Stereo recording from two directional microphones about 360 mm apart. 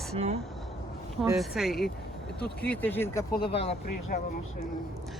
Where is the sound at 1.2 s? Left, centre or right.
Centre.